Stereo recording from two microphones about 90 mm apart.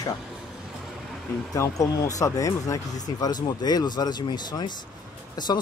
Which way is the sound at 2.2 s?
40° left (ahead or behind).